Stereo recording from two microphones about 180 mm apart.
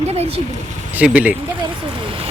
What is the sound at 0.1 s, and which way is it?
Speech, 35° right (ahead or behind).